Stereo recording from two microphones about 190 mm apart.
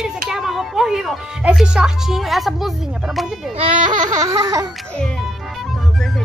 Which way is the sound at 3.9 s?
20° right (ahead or behind).